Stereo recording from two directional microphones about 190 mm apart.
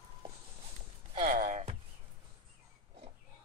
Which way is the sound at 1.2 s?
45° right (ahead or behind).